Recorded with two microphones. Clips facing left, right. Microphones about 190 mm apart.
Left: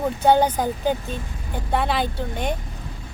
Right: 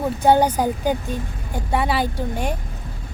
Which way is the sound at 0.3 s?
10° right (ahead or behind).